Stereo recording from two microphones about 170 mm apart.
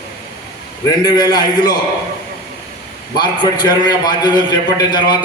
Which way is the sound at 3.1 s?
25° left (ahead or behind).